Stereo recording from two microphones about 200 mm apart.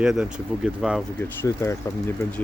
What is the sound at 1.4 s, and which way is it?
Speech, 15° left (ahead or behind).